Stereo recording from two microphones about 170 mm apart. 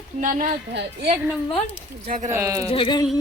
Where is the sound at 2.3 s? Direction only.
20° right (ahead or behind).